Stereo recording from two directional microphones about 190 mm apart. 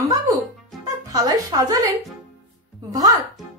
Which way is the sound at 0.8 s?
20° right (ahead or behind).